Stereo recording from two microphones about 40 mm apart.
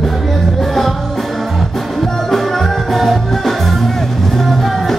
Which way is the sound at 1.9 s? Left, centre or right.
Centre.